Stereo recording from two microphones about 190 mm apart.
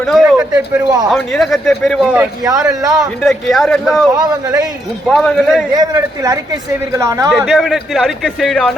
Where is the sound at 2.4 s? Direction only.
20° right (ahead or behind).